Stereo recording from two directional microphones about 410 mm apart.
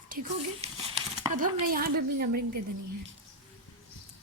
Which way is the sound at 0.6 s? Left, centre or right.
Centre.